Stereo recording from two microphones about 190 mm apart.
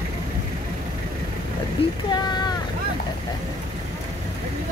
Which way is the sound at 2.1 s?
20° left (ahead or behind).